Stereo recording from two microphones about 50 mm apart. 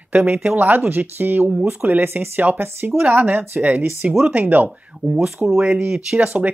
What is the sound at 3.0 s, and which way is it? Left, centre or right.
Speech, right.